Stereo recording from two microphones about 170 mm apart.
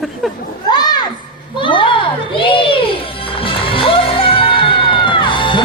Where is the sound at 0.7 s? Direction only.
25° left (ahead or behind).